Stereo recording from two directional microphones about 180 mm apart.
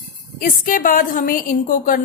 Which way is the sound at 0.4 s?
50° left (ahead or behind).